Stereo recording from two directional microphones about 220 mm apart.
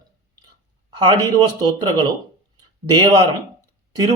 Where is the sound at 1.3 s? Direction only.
20° right (ahead or behind).